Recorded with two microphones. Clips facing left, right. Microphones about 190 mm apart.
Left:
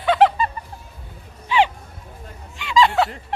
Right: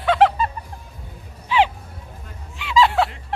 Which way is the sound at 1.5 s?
5° right (ahead or behind).